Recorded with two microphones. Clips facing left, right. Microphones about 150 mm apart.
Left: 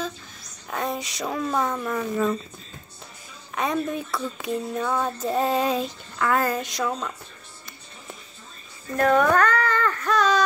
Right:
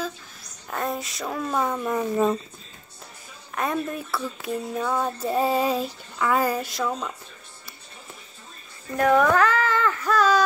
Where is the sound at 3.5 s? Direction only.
Centre (ahead or behind).